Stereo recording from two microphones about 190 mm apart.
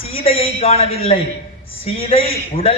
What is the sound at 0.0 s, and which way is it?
A man's voice, 30° left (ahead or behind).